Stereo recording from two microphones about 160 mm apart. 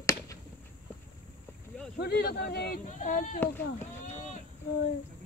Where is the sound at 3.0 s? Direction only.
55° left (ahead or behind).